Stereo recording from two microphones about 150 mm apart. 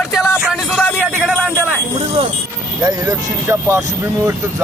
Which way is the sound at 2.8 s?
25° right (ahead or behind).